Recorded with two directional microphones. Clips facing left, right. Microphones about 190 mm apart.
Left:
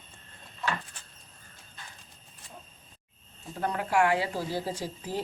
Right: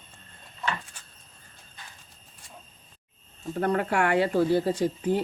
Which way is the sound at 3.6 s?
60° right (ahead or behind).